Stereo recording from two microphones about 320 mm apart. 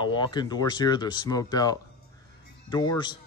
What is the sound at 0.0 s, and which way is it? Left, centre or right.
Speech, centre.